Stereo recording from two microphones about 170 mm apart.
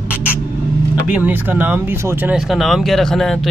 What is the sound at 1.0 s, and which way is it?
Speech, 10° right (ahead or behind).